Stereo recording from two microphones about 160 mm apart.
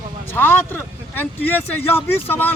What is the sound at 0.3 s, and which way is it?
Speech, 10° left (ahead or behind).